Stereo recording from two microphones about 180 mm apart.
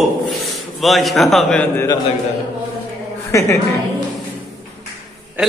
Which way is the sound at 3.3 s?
15° left (ahead or behind).